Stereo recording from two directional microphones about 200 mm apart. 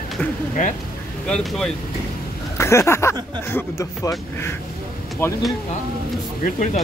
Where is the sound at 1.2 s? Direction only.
Centre (ahead or behind).